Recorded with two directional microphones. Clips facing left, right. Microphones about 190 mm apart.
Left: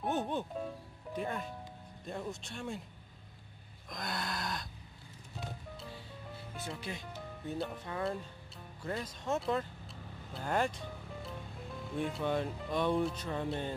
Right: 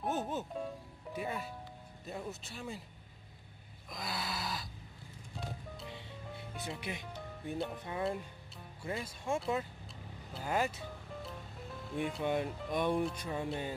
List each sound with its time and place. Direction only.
0.0 s speech: centre (ahead or behind)
3.9 s speech: centre (ahead or behind)
6.5 s speech: centre (ahead or behind)
6.8 s speech: 20° right (ahead or behind)
7.5 s speech: centre (ahead or behind)
8.8 s speech: 10° right (ahead or behind)
10.3 s music: 5° right (ahead or behind)
12.2 s speech: 15° right (ahead or behind)